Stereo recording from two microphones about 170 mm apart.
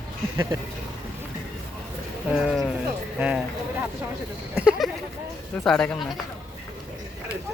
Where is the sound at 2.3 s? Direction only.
Centre (ahead or behind).